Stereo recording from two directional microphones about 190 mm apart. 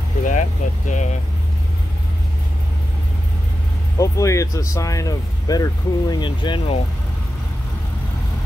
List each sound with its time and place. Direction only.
0.2 s vehicle: 40° left (ahead or behind)
4.0 s speech: 15° left (ahead or behind)